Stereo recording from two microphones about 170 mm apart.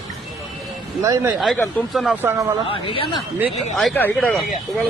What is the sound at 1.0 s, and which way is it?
Speech, 20° right (ahead or behind).